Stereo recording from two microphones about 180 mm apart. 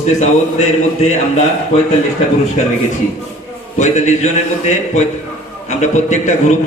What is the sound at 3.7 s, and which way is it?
A man's voice, 40° left (ahead or behind).